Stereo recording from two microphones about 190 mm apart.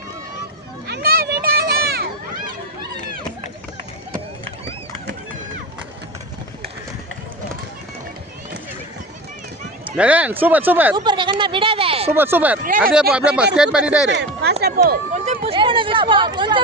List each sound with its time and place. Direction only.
0.9 s children playing: 55° right (ahead or behind)
10.0 s speech: 10° right (ahead or behind)
10.9 s a sound: 25° right (ahead or behind)
12.1 s speech: 10° right (ahead or behind)
12.6 s speech: 45° right (ahead or behind)
12.9 s speech: 5° right (ahead or behind)
14.1 s speech: 65° right (ahead or behind)
15.1 s speech: 40° right (ahead or behind)